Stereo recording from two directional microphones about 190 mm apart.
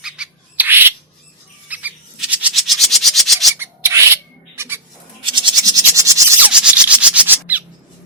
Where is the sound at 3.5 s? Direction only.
10° right (ahead or behind).